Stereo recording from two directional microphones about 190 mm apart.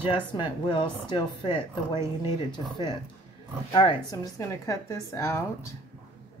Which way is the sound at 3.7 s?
25° left (ahead or behind).